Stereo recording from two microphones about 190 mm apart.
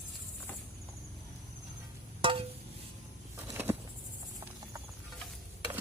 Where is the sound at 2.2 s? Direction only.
30° right (ahead or behind).